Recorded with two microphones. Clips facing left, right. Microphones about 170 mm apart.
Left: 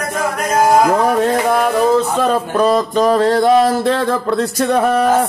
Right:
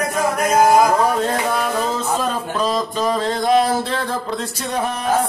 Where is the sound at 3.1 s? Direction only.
60° left (ahead or behind).